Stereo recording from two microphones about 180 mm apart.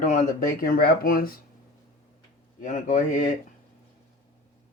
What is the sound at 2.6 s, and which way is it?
Speech, 45° left (ahead or behind).